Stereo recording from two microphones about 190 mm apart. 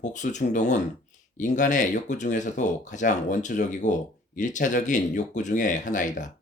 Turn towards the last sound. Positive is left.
turn(degrees=40)  # may be behind; listen again after turning